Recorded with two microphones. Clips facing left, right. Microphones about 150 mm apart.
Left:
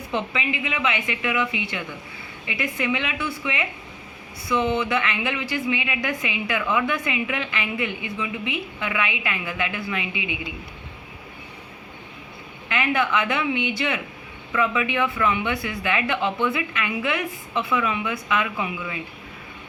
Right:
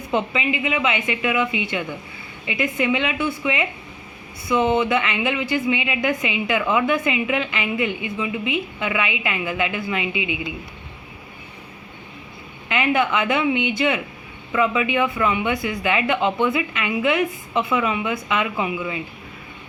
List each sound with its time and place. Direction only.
0.1 s speech: 15° right (ahead or behind)
4.9 s a woman's voice: 20° right (ahead or behind)
12.6 s speech: 20° right (ahead or behind)